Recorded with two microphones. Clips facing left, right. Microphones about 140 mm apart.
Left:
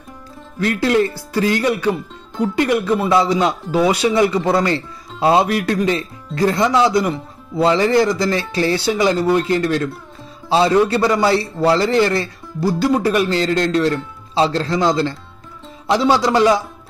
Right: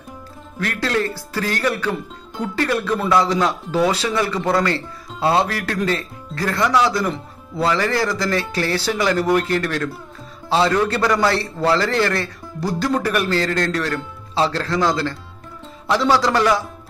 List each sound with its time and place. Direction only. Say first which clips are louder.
0.6 s a man's voice: left 6 dB; 15° left (ahead or behind)